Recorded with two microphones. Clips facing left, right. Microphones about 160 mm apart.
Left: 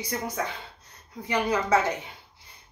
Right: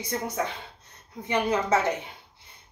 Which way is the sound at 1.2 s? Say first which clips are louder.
Right 1 dB; 25° right (ahead or behind).